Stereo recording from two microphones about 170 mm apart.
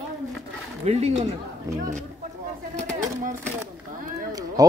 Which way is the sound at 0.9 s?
40° right (ahead or behind).